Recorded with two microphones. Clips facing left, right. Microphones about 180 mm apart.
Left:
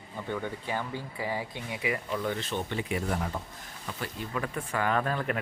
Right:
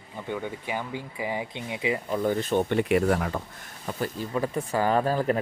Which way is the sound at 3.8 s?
40° right (ahead or behind).